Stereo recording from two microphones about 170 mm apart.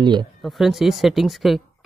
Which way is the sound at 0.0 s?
25° right (ahead or behind).